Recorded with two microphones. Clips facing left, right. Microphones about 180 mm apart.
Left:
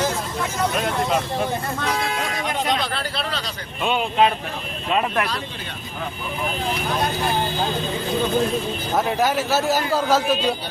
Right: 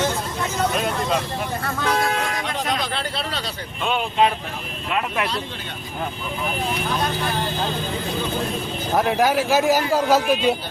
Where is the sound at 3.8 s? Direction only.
5° left (ahead or behind).